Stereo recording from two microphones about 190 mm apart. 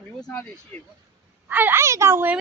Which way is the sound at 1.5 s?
10° right (ahead or behind).